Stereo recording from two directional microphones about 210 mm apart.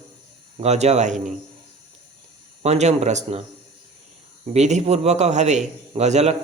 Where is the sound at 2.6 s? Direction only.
30° right (ahead or behind).